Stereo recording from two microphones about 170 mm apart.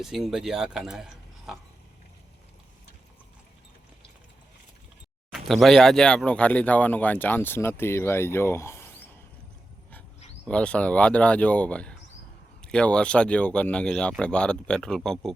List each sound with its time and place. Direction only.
0.0 s speech: centre (ahead or behind)
5.3 s speech: centre (ahead or behind)
10.4 s speech: 5° left (ahead or behind)